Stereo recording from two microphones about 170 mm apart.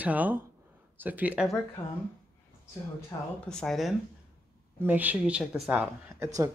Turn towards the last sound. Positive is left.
turn(degrees=-15)  # may be behind; listen again after turning